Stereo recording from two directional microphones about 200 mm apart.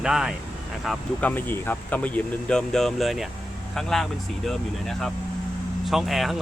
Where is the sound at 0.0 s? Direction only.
Centre (ahead or behind).